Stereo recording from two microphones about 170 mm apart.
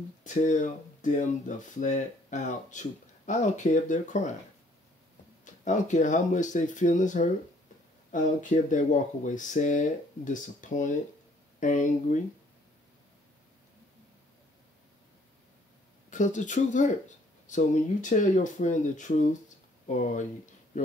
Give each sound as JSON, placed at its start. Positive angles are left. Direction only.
{"t": 0.2, "sound": "speech", "side_deg": 45}
{"t": 5.4, "sound": "speech", "side_deg": 45}
{"t": 16.1, "sound": "speech", "side_deg": 45}